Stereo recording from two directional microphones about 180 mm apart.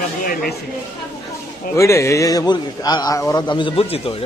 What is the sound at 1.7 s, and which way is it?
A man's voice, 15° left (ahead or behind).